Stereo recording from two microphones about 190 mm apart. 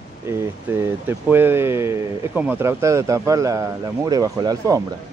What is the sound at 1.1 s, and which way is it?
Speech, 10° right (ahead or behind).